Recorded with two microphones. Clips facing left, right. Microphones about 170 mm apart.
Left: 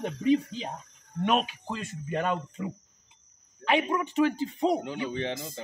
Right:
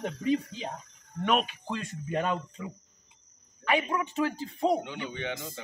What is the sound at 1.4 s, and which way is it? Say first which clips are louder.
Speech: even; 5° left (ahead or behind).